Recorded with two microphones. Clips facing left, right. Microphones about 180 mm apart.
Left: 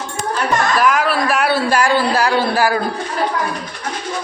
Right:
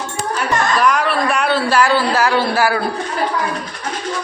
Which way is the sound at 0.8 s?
Centre (ahead or behind).